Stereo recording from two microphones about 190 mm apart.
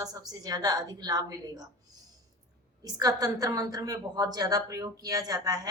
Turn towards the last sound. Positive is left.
turn(degrees=-20)  # may be behind; listen again after turning